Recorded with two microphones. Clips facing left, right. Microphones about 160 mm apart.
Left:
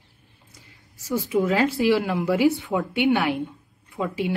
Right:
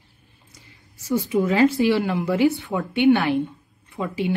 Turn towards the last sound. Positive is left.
turn(degrees=0)  # may be behind; listen again after turning